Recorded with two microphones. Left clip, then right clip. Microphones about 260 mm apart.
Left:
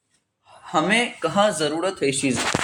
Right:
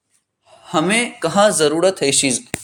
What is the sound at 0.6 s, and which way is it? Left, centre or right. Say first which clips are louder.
Speech: right 2 dB; right.